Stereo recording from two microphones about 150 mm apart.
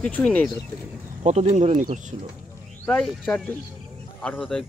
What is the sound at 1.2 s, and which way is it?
Speech, 50° right (ahead or behind).